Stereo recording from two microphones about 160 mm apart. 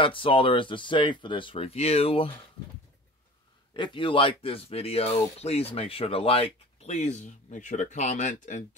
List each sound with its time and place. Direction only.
0.0 s speech: 30° left (ahead or behind)
3.7 s speech: 30° left (ahead or behind); by 8.6 s 50° left (ahead or behind)